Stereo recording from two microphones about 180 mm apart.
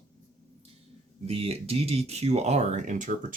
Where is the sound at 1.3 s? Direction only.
35° right (ahead or behind).